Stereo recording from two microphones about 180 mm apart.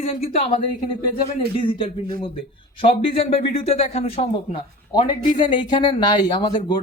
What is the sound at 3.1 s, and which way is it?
Speech, 35° left (ahead or behind).